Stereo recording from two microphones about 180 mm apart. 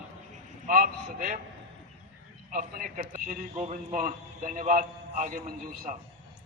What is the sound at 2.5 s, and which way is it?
A man's voice, 50° right (ahead or behind).